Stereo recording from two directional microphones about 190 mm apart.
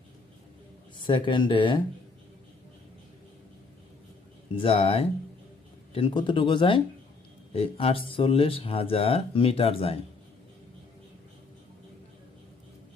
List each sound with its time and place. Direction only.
0.9 s speech: 25° left (ahead or behind)
4.5 s speech: 30° left (ahead or behind)